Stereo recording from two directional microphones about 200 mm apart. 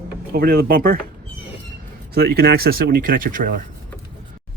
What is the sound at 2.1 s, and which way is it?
Speech, 50° right (ahead or behind).